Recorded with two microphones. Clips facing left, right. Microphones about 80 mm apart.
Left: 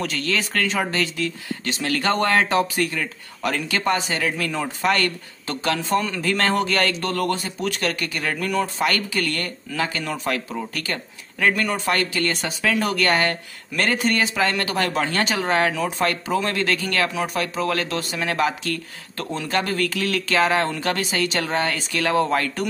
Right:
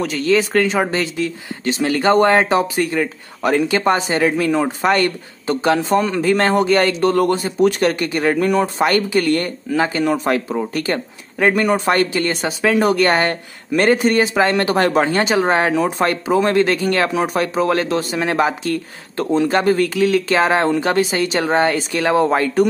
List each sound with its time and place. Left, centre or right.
0.0 s speech: centre